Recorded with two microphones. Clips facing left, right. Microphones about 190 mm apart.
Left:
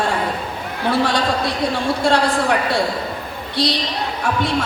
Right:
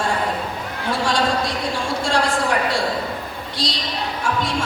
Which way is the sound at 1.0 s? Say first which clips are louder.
Left 1 dB; 60° left (ahead or behind).